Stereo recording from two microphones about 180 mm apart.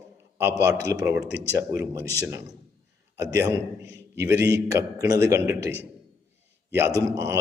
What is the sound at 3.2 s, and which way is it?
A man's voice, 15° right (ahead or behind).